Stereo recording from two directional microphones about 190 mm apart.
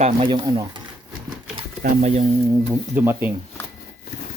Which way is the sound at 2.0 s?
35° right (ahead or behind).